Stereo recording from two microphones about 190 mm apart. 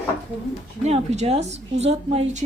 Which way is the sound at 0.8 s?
35° right (ahead or behind).